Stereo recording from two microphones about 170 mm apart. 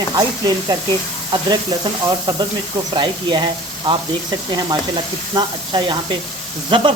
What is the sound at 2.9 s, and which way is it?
Speech, 25° right (ahead or behind).